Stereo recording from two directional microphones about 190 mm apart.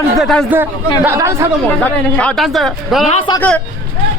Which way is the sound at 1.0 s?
15° right (ahead or behind).